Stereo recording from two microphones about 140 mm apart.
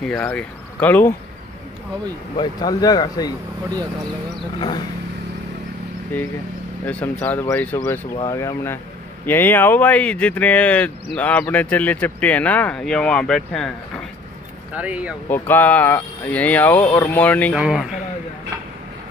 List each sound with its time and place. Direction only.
0.0 s a man's voice: 5° left (ahead or behind)
2.3 s speech: 30° left (ahead or behind)
4.6 s speech: 30° left (ahead or behind)
6.1 s speech: 10° left (ahead or behind)
14.7 s speech: 10° right (ahead or behind)
15.2 s speech: 15° left (ahead or behind)
17.6 s a man's voice: 5° right (ahead or behind)